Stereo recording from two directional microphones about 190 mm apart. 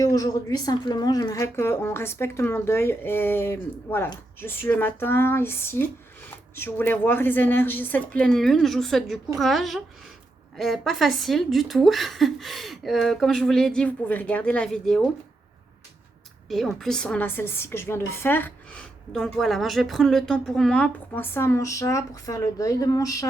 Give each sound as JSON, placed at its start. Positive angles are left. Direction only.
{"t": 0.0, "sound": "a woman's voice", "side_deg": 15}
{"t": 16.5, "sound": "a woman's voice", "side_deg": 0}